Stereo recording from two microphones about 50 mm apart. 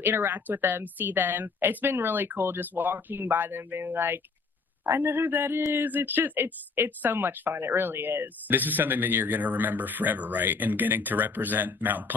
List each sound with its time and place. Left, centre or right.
0.0 s a woman's voice: right